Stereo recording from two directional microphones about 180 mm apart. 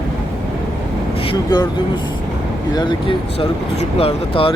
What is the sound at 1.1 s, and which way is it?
Speech, 30° left (ahead or behind).